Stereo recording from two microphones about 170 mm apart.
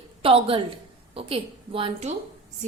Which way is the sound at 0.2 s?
35° right (ahead or behind).